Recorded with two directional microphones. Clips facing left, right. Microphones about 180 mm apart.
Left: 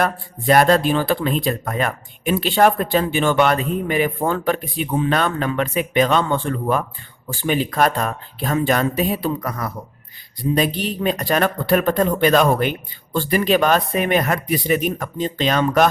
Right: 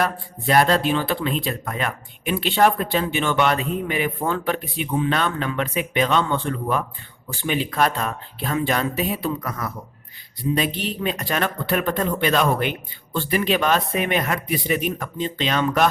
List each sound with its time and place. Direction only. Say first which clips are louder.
0.0 s speech: left 3 dB; 45° left (ahead or behind)